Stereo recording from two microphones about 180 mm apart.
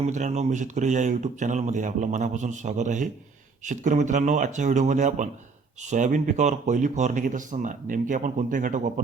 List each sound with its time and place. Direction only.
0.0 s speech: 40° right (ahead or behind)